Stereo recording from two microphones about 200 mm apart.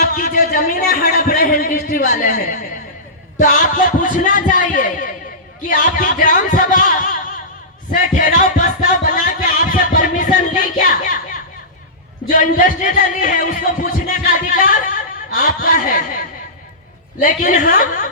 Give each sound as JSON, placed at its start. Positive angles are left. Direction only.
{"t": 0.0, "sound": "a man's voice", "side_deg": 45}
{"t": 8.1, "sound": "music", "side_deg": 40}
{"t": 12.3, "sound": "speech", "side_deg": 45}